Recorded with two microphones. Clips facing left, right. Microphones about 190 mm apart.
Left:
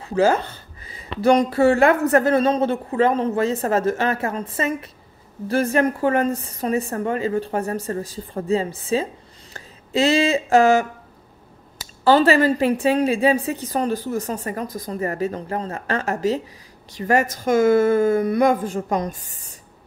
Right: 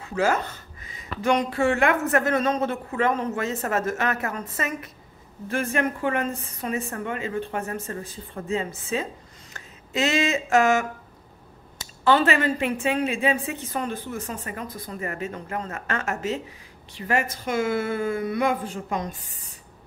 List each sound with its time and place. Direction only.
0.0 s a woman's voice: 30° left (ahead or behind)
12.0 s a woman's voice: 35° left (ahead or behind)